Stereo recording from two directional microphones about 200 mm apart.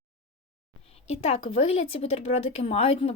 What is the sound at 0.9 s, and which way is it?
Speech, 30° left (ahead or behind).